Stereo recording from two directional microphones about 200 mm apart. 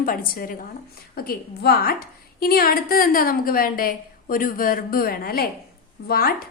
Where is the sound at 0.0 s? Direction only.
45° left (ahead or behind).